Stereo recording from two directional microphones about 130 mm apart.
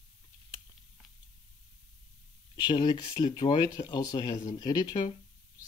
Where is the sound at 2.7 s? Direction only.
35° left (ahead or behind).